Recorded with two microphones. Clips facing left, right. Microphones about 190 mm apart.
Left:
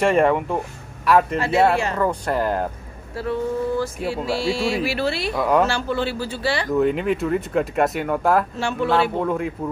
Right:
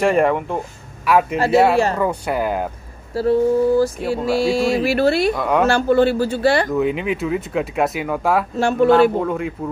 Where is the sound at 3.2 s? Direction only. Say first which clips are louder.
Right 8 dB; 35° right (ahead or behind).